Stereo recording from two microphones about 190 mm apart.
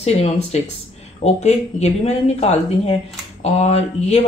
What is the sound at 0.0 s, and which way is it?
Speech, 35° left (ahead or behind).